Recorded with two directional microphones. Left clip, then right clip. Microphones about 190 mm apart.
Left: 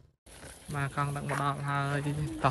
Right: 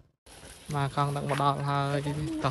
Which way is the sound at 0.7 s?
10° right (ahead or behind).